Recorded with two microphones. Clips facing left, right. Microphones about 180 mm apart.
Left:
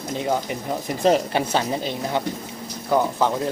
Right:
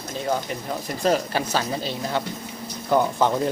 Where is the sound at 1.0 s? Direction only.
25° left (ahead or behind).